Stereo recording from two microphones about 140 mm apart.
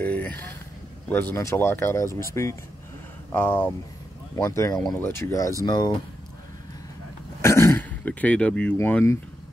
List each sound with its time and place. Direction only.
0.0 s a sound: 10° left (ahead or behind)
1.0 s speech: 10° left (ahead or behind); by 5.9 s 30° left (ahead or behind)
7.4 s throat clearing: 20° left (ahead or behind)
8.7 s speech: 15° left (ahead or behind)